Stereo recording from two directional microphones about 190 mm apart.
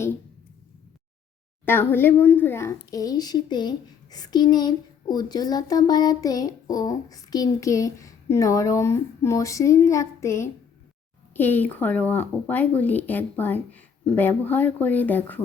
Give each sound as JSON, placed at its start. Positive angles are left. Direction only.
{"t": 1.6, "sound": "a child's voice", "side_deg": 10}